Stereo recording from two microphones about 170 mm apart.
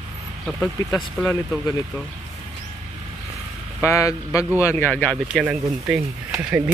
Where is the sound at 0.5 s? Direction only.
5° left (ahead or behind).